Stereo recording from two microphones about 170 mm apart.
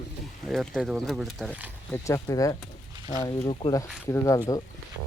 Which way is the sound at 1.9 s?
20° left (ahead or behind).